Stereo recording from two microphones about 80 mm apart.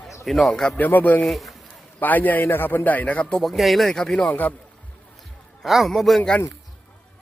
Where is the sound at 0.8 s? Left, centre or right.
Left.